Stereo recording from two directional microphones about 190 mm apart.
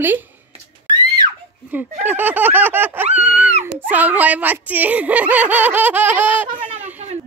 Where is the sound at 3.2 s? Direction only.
10° right (ahead or behind).